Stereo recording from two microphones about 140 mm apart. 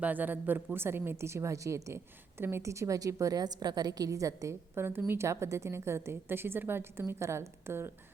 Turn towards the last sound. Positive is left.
turn(degrees=-15)  # may be behind; listen again after turning